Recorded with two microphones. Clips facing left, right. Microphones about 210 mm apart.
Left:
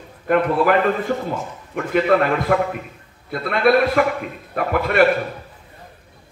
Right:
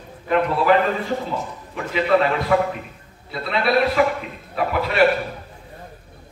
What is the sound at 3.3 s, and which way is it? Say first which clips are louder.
A man's voice: left 5 dB; 55° left (ahead or behind).